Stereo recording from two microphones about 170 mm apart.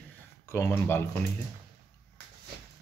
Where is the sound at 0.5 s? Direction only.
15° left (ahead or behind).